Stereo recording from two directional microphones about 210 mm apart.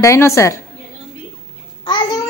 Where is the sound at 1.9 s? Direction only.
20° left (ahead or behind).